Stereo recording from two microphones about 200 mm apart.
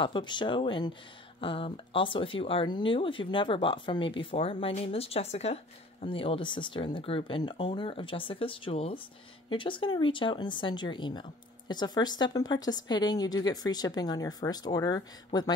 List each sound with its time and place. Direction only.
0.0 s speech: 25° left (ahead or behind)